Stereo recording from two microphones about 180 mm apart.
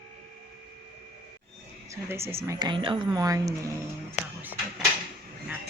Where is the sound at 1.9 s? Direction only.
15° right (ahead or behind).